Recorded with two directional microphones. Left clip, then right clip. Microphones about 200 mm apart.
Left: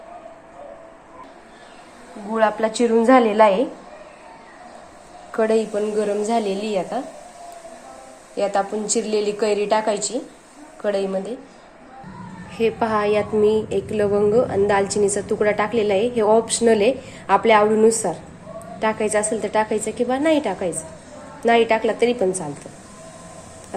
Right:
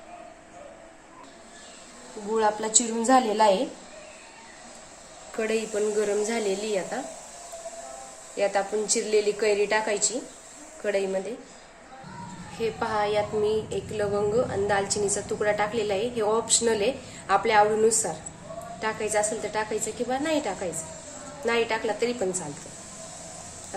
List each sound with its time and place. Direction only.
2.3 s a woman's voice: 10° left (ahead or behind)
5.4 s speech: 5° left (ahead or behind)
8.4 s a woman's voice: 10° left (ahead or behind)
12.5 s a woman's voice: 25° left (ahead or behind)